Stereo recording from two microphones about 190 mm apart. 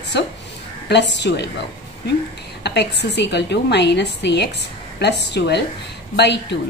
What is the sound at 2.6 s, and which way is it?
A woman's voice, 65° left (ahead or behind).